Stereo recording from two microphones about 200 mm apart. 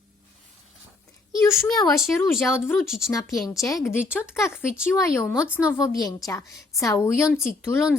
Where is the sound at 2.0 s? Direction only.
Centre (ahead or behind).